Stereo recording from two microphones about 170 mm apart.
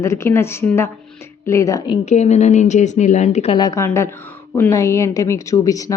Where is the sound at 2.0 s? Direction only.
40° left (ahead or behind).